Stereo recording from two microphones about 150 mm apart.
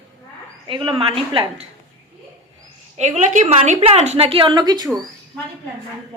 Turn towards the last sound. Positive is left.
turn(degrees=-25)  # may be behind; listen again after turning